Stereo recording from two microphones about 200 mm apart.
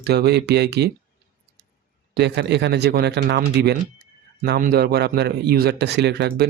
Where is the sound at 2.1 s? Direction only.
55° right (ahead or behind).